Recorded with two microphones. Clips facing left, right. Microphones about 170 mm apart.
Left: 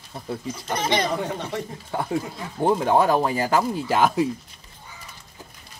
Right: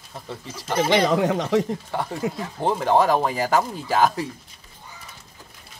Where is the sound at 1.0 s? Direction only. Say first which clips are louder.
Right 6 dB; 90° right.